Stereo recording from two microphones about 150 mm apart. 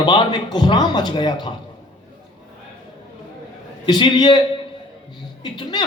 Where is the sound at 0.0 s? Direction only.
30° left (ahead or behind).